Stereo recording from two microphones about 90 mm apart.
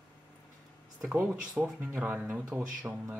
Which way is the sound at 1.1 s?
15° right (ahead or behind).